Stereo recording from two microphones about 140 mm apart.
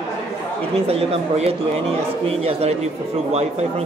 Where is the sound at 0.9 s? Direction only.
45° right (ahead or behind).